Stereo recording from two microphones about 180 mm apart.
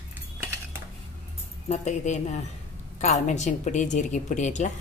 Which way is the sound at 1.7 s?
40° left (ahead or behind).